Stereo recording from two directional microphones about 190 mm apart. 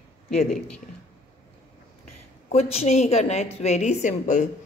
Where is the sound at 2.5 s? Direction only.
35° left (ahead or behind).